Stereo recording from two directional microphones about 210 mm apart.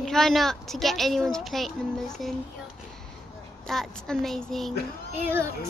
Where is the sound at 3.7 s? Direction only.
Centre (ahead or behind).